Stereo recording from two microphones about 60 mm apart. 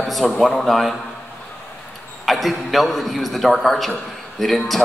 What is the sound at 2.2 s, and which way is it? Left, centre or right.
A man's voice, centre.